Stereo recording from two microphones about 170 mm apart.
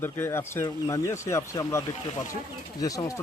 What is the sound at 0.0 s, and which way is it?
Speech, 15° left (ahead or behind).